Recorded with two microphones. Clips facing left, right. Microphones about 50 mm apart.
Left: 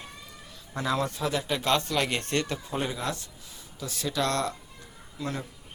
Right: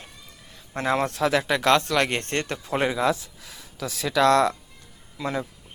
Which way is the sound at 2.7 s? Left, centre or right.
Right.